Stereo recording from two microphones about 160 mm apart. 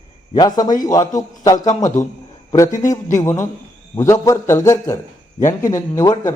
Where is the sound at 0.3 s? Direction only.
25° left (ahead or behind).